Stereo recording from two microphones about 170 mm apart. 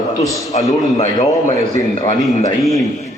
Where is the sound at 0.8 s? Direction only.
40° left (ahead or behind).